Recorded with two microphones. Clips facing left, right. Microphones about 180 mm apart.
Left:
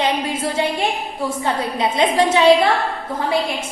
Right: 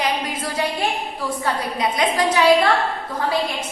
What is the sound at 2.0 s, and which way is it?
Speech, 25° left (ahead or behind).